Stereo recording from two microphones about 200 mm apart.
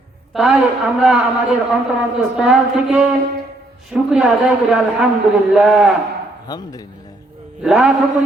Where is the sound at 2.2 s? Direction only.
5° right (ahead or behind).